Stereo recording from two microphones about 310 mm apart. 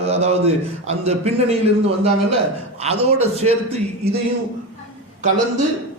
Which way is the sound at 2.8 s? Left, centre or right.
Centre.